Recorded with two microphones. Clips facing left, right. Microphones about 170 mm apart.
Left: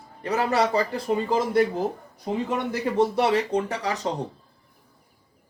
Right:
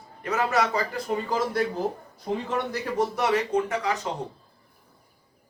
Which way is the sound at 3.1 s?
30° left (ahead or behind).